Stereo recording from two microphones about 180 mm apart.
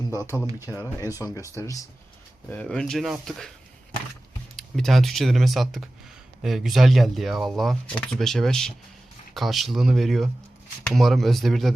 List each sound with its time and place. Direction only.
0.1 s speech: 15° left (ahead or behind)
2.5 s speech: 5° left (ahead or behind)
4.5 s speech: centre (ahead or behind)